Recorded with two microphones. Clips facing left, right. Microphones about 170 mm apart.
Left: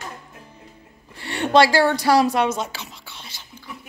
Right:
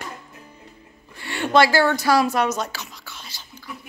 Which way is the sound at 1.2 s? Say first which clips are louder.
Left 1 dB; 30° left (ahead or behind).